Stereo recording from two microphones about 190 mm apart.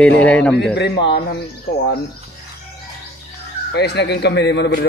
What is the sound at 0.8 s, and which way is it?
Speech, 60° left (ahead or behind).